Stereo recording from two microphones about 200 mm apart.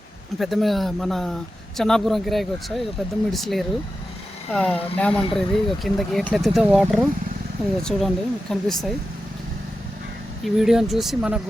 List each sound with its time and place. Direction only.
0.3 s speech: centre (ahead or behind)
10.4 s speech: centre (ahead or behind)